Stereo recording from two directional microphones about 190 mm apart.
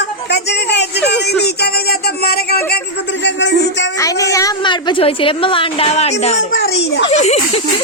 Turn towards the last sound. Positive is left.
turn(degrees=35)  # may be behind; listen again after turning